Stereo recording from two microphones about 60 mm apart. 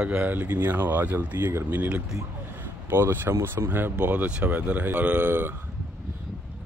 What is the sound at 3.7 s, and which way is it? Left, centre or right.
Speech, right.